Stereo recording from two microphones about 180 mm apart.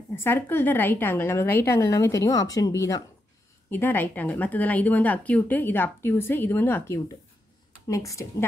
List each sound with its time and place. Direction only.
0.1 s a woman's voice: 10° left (ahead or behind)